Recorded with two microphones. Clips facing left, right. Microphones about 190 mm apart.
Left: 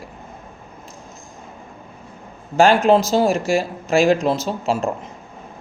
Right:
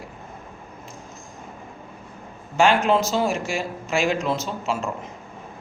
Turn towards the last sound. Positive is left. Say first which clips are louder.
# left 5 dB
turn(degrees=35)  # may be behind; listen again after turning